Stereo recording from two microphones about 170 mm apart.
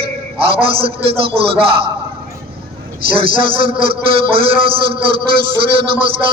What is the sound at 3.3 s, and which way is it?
Speech, 65° right (ahead or behind).